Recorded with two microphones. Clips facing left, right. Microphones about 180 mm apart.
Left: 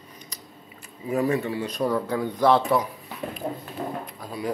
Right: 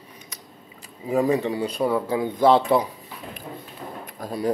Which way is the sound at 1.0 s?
20° right (ahead or behind).